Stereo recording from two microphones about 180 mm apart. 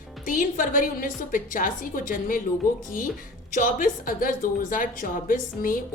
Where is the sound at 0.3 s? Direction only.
50° left (ahead or behind).